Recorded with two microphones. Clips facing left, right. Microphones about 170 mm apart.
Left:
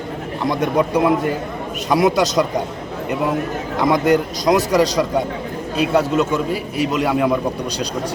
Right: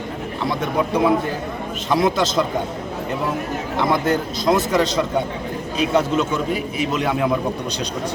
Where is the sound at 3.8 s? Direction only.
15° left (ahead or behind).